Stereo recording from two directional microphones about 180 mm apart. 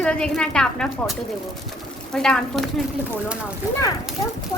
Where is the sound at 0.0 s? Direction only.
5° left (ahead or behind).